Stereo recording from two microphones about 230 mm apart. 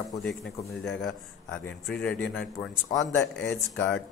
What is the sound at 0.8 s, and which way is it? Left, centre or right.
Speech, left.